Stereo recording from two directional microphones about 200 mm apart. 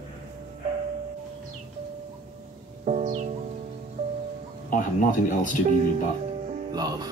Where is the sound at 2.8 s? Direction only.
35° right (ahead or behind).